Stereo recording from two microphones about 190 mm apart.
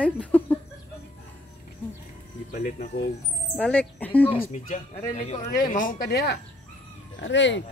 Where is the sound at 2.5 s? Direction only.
40° left (ahead or behind).